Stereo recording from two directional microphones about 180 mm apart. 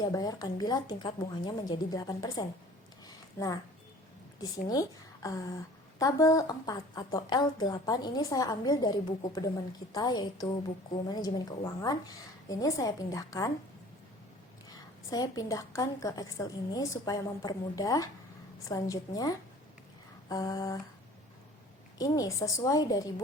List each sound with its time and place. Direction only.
0.0 s a woman's voice: 20° left (ahead or behind)
15.1 s a woman's voice: 20° left (ahead or behind)
21.9 s a woman's voice: 20° left (ahead or behind)